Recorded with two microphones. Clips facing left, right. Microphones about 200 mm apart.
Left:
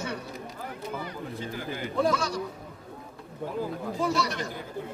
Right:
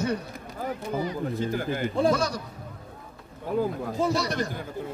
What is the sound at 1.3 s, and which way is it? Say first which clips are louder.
Speech: right 7 dB; 45° right (ahead or behind).